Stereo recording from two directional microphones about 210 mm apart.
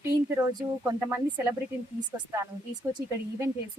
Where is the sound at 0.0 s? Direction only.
15° right (ahead or behind).